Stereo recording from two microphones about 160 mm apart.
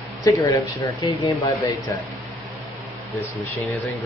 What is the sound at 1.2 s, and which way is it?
Speech, 20° left (ahead or behind).